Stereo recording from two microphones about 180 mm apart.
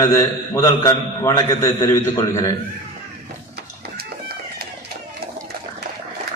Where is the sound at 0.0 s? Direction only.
20° left (ahead or behind).